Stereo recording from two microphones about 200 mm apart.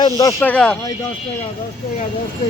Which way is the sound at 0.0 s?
15° left (ahead or behind).